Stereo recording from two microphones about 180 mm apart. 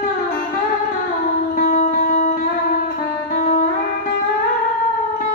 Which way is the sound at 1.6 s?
55° left (ahead or behind).